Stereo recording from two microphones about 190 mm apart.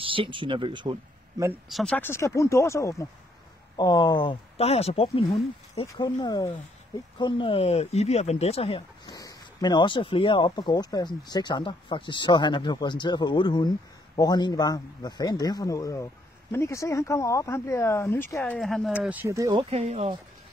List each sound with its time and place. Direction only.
0.0 s speech: 25° right (ahead or behind)
1.7 s speech: centre (ahead or behind); by 5.9 s 30° left (ahead or behind)
5.9 s speech: 20° left (ahead or behind); by 19.0 s centre (ahead or behind)
19.0 s speech: 10° right (ahead or behind)
19.7 s speech: 35° right (ahead or behind)